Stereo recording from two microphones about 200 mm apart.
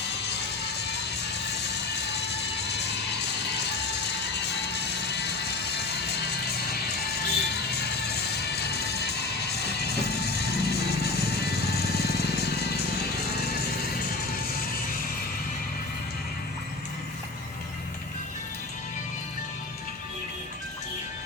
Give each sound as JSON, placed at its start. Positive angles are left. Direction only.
{"t": 0.2, "sound": "music", "side_deg": 55}